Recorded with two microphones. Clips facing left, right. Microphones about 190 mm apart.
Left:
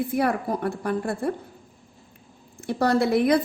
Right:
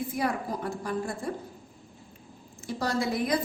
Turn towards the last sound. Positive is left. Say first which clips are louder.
# left 8 dB
turn(degrees=65)  # may be behind; listen again after turning